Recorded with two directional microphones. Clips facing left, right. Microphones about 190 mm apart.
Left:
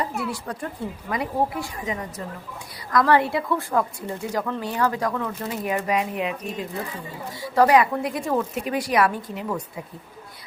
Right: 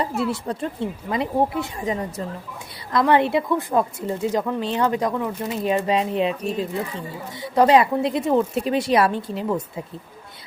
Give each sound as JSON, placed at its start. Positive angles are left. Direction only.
{"t": 0.3, "sound": "a woman's voice", "side_deg": -25}